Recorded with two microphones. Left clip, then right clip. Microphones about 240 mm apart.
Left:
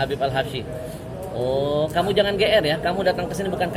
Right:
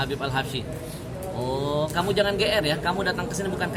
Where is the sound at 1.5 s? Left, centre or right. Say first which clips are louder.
Left 5 dB; right.